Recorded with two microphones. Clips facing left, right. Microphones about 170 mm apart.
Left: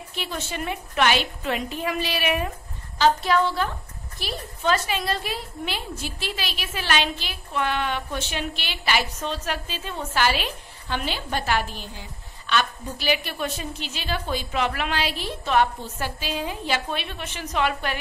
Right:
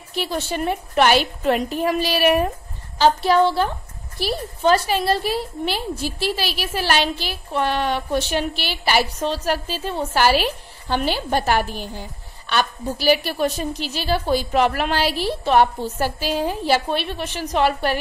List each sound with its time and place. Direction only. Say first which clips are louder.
0.2 s a woman's voice: right 7 dB; 35° right (ahead or behind)
3.0 s a woman's voice: right 4 dB; 30° right (ahead or behind)